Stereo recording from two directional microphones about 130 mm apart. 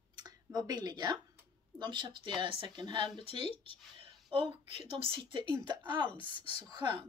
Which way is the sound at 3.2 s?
45° left (ahead or behind).